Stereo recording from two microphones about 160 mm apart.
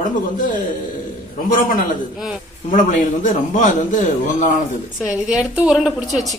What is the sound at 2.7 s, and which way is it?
A man's voice, 55° left (ahead or behind).